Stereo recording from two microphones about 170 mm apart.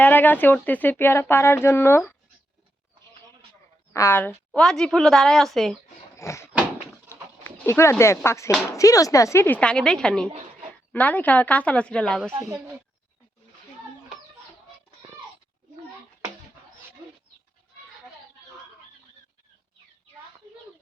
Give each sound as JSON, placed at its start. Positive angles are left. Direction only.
{"t": 0.0, "sound": "speech", "side_deg": 10}
{"t": 3.9, "sound": "a woman's voice", "side_deg": 15}
{"t": 6.1, "sound": "speech", "side_deg": 15}
{"t": 6.5, "sound": "door", "side_deg": -5}
{"t": 7.1, "sound": "a sound", "side_deg": 15}
{"t": 8.7, "sound": "speech", "side_deg": 20}
{"t": 12.3, "sound": "a woman's voice", "side_deg": -10}